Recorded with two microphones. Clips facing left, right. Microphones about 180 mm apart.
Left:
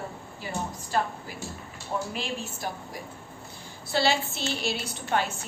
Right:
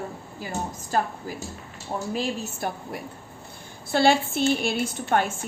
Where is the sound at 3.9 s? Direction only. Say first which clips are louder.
Right 5 dB; 50° right (ahead or behind).